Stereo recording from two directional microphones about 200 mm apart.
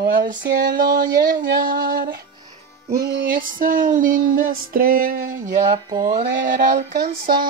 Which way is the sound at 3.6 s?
40° right (ahead or behind).